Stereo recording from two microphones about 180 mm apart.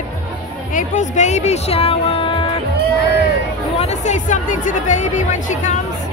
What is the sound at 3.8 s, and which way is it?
Speech, 40° left (ahead or behind).